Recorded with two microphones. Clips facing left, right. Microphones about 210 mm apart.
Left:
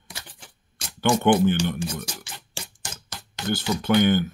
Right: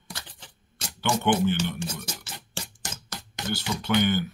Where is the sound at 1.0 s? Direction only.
50° left (ahead or behind).